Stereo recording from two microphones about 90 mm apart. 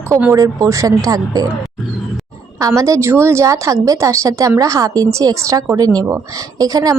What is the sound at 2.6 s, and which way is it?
A woman's voice, 40° right (ahead or behind).